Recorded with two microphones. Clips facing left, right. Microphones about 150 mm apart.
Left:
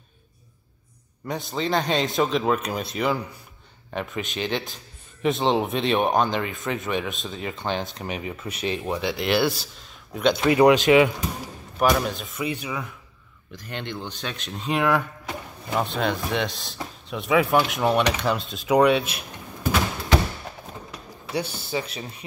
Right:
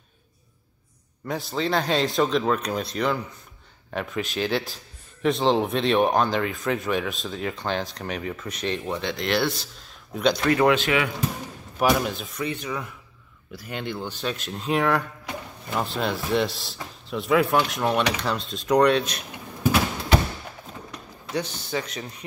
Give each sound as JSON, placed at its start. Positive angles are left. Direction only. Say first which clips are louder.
{"t": 1.2, "sound": "speech", "louder": "right 1 dB", "side_deg": 0}
{"t": 10.4, "sound": "speech", "louder": "left 5 dB", "side_deg": 15}
{"t": 11.8, "sound": "speech", "louder": "left 1 dB", "side_deg": -5}
{"t": 13.5, "sound": "speech", "louder": "right 2 dB", "side_deg": -5}
{"t": 21.3, "sound": "a man's voice", "louder": "even", "side_deg": 10}